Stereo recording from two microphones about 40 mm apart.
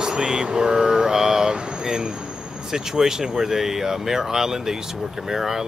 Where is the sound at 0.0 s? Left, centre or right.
Centre.